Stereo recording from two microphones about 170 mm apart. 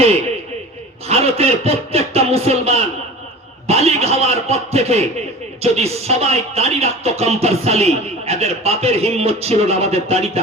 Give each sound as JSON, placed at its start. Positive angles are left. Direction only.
{"t": 1.0, "sound": "speech", "side_deg": -35}